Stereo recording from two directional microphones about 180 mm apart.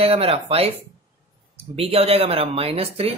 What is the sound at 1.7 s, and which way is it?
A man's voice, 35° right (ahead or behind).